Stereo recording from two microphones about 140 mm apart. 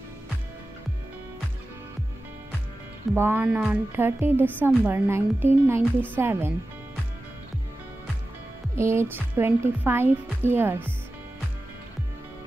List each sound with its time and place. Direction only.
3.2 s speech: 15° right (ahead or behind)
8.7 s speech: 20° right (ahead or behind)